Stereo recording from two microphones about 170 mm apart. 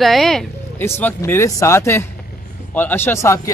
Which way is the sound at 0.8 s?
15° left (ahead or behind).